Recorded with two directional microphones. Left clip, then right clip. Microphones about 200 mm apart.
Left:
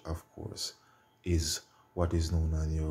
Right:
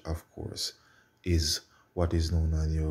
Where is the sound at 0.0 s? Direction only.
15° right (ahead or behind).